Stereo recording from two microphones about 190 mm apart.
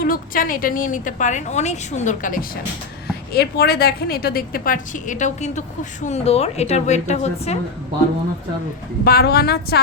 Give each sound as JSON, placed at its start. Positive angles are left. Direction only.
{"t": 0.0, "sound": "a woman's voice", "side_deg": 50}
{"t": 3.1, "sound": "a woman's voice", "side_deg": 60}
{"t": 9.0, "sound": "a woman's voice", "side_deg": 55}